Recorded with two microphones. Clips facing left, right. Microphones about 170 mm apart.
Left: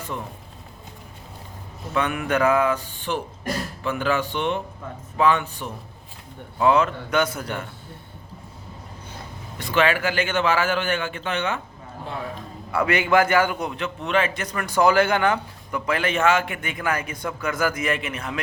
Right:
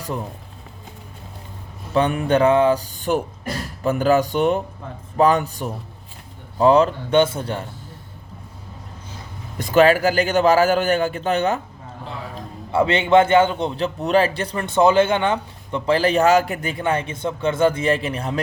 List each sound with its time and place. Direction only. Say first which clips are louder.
1.9 s a man's voice: right 5 dB; 30° right (ahead or behind)
9.6 s a man's voice: right 7 dB; 40° right (ahead or behind)
12.7 s a man's voice: right 4 dB; 25° right (ahead or behind)